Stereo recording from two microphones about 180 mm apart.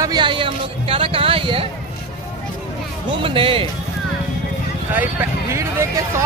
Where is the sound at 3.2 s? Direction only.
30° right (ahead or behind).